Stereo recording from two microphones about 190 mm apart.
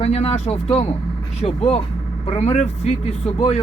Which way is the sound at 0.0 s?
35° left (ahead or behind).